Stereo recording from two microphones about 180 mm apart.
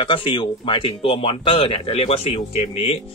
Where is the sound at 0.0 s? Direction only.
30° left (ahead or behind).